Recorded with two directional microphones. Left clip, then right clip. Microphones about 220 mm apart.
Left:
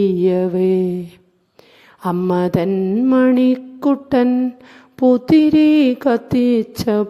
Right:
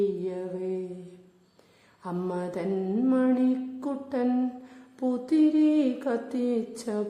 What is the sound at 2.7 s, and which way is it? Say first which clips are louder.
Music: left 10 dB; 25° left (ahead or behind).